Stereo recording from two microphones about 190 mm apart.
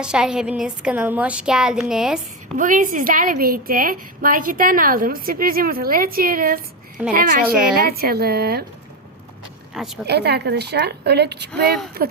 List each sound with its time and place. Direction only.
0.0 s speech: 5° right (ahead or behind)
2.6 s a woman's voice: 45° right (ahead or behind)
9.7 s speech: centre (ahead or behind)
10.1 s a woman's voice: 60° right (ahead or behind)